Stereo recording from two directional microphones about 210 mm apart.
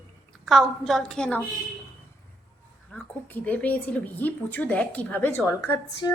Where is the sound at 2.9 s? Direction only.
10° left (ahead or behind).